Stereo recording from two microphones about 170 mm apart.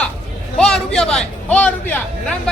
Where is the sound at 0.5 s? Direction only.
5° left (ahead or behind).